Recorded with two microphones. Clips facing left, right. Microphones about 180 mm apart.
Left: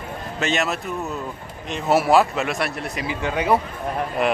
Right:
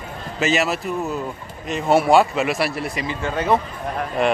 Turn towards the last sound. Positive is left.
turn(degrees=5)  # may be behind; listen again after turning